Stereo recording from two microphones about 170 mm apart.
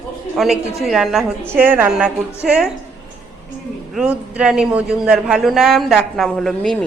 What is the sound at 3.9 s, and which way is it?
A man's voice, 5° right (ahead or behind).